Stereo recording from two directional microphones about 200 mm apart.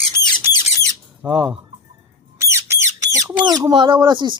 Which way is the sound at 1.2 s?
20° right (ahead or behind).